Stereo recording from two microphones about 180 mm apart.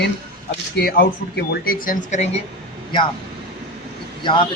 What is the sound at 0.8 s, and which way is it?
Speech, 60° left (ahead or behind).